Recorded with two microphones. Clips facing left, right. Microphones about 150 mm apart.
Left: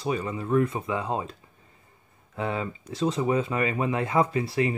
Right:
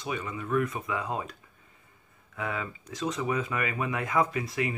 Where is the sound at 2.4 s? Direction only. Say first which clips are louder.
Left 4 dB; 30° left (ahead or behind).